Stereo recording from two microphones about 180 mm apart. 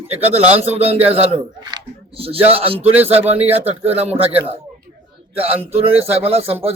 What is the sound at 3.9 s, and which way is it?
Speech, 35° right (ahead or behind).